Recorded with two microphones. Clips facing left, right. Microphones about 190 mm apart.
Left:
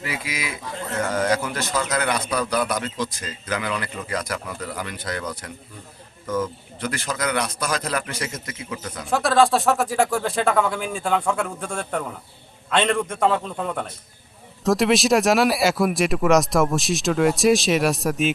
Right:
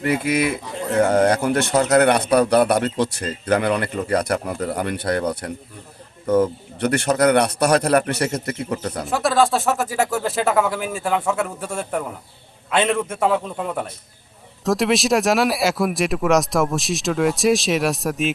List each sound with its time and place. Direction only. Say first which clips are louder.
0.0 s a man's voice: right 11 dB; 60° right (ahead or behind)
6.7 s a man's voice: right 9 dB; 65° right (ahead or behind)
8.5 s speech: right 7 dB; 45° right (ahead or behind)
9.0 s a man's voice: even; centre (ahead or behind)